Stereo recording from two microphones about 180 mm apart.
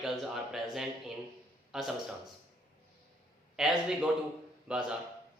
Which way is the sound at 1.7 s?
Centre (ahead or behind).